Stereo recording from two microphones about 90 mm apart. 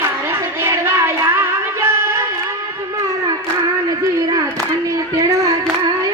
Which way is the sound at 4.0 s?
40° right (ahead or behind).